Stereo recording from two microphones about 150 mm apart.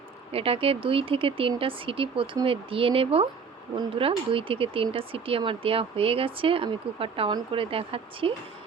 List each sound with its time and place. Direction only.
0.3 s speech: 40° right (ahead or behind)